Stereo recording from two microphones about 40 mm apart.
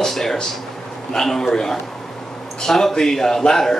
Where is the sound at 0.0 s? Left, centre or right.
Centre.